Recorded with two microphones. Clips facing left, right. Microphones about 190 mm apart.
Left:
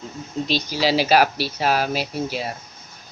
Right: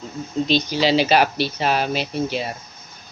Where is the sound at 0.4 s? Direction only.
5° left (ahead or behind).